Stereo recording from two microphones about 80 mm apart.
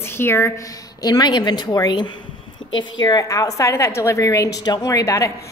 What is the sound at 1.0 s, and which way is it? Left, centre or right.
Speech, left.